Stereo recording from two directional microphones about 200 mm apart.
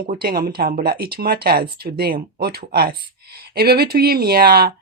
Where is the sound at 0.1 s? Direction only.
50° right (ahead or behind).